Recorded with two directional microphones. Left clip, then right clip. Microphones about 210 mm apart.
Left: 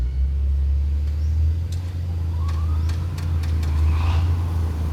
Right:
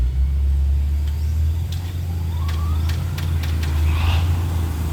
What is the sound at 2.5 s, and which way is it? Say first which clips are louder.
Vehicle: right 5 dB; 5° left (ahead or behind).